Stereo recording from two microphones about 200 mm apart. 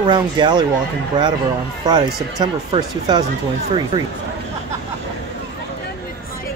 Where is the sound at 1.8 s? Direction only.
20° right (ahead or behind).